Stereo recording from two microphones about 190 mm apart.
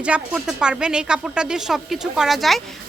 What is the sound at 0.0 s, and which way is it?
Speech, 5° right (ahead or behind).